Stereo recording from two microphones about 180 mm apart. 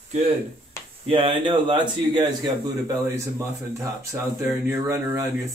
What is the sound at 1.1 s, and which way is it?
Speech, 30° right (ahead or behind).